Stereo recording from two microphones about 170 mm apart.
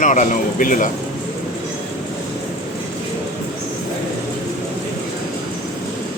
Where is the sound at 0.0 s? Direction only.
50° left (ahead or behind).